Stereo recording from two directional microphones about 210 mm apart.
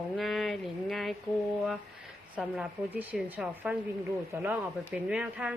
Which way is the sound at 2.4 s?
5° right (ahead or behind).